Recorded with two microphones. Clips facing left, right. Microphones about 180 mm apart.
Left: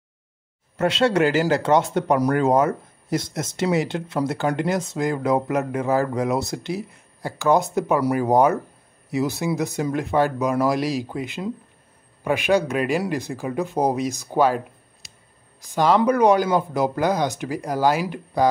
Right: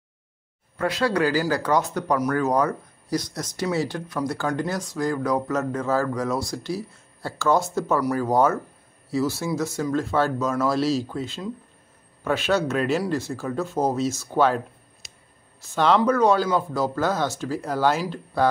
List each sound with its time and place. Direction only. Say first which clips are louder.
0.7 s speech: left 4 dB; 25° left (ahead or behind)